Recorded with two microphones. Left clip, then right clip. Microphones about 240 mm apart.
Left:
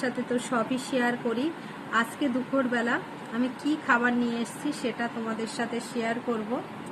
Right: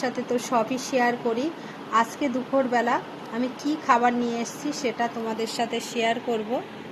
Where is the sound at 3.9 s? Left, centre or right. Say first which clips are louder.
Right 5 dB; centre.